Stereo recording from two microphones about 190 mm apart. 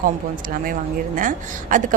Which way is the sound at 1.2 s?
45° right (ahead or behind).